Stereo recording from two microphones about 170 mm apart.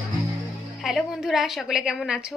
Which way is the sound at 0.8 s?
Centre (ahead or behind).